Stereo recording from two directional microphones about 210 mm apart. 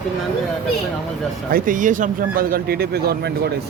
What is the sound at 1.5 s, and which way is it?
Speech, 40° right (ahead or behind).